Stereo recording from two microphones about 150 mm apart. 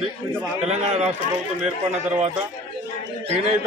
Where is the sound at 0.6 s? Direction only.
45° right (ahead or behind).